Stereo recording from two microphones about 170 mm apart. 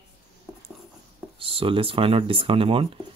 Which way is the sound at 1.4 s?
30° right (ahead or behind).